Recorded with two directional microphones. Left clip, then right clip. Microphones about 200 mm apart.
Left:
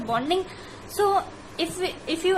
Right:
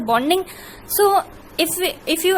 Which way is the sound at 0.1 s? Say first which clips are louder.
Right 7 dB; 55° right (ahead or behind).